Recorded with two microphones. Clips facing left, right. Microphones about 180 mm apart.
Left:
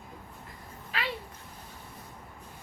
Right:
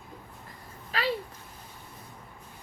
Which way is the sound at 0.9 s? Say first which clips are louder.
Right 5 dB; 35° right (ahead or behind).